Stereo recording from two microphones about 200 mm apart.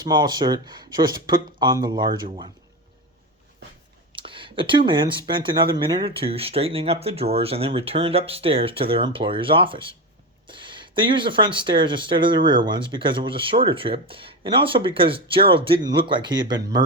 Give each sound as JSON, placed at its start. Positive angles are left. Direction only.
{"t": 0.0, "sound": "speech", "side_deg": -20}
{"t": 4.1, "sound": "speech", "side_deg": -25}